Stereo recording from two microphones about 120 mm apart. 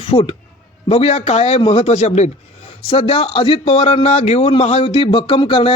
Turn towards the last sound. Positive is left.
turn(degrees=50)  # may be behind; listen again after turning